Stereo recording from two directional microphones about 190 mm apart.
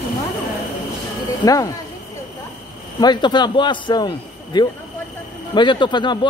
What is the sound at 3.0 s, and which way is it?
A man's voice, 20° left (ahead or behind).